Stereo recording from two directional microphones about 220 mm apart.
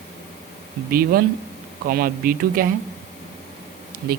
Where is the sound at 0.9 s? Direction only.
40° right (ahead or behind).